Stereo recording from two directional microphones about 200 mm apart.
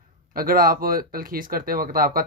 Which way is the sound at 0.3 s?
45° right (ahead or behind).